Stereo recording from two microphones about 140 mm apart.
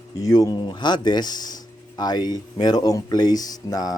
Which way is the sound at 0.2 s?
25° left (ahead or behind).